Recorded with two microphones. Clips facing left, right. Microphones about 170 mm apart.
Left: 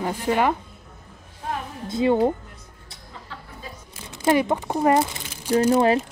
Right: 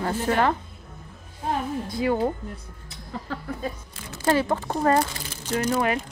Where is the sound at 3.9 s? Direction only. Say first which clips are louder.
Left 3 dB; 20° left (ahead or behind).